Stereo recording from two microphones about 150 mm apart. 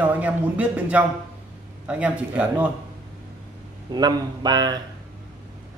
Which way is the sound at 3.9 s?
25° right (ahead or behind).